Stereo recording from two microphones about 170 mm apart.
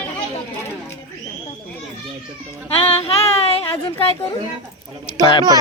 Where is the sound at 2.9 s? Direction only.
35° left (ahead or behind).